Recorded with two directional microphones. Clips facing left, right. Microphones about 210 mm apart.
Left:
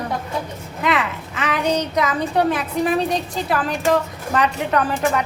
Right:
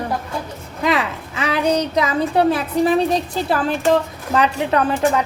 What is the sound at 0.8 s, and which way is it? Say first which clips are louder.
A woman's voice: right 2 dB; 30° right (ahead or behind).